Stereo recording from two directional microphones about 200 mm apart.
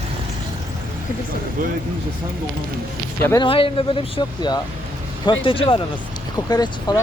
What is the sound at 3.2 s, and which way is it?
Speech, 15° left (ahead or behind).